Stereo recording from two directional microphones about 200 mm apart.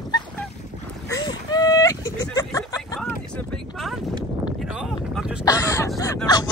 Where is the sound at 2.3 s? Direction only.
15° left (ahead or behind).